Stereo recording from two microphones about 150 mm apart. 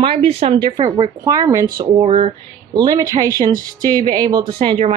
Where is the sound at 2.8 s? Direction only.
25° right (ahead or behind).